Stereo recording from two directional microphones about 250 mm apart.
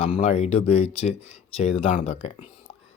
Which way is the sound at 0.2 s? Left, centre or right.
Left.